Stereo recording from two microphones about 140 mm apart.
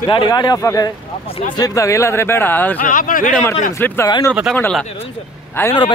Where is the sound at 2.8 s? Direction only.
75° left (ahead or behind).